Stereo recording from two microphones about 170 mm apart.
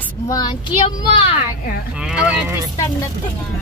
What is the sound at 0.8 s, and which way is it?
Speech, 30° left (ahead or behind).